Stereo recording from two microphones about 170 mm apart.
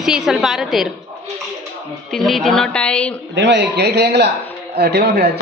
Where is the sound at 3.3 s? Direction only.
90° right.